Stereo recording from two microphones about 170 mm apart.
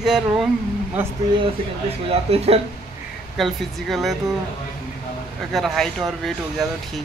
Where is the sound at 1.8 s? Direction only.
35° right (ahead or behind).